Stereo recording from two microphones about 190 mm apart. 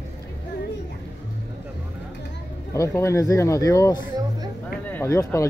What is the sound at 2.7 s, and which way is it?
Speech, 15° left (ahead or behind).